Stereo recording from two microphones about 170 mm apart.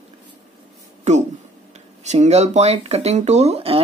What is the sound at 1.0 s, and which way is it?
Speech, 45° right (ahead or behind).